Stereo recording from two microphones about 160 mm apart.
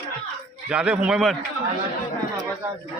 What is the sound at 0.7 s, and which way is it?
Speech, 5° right (ahead or behind).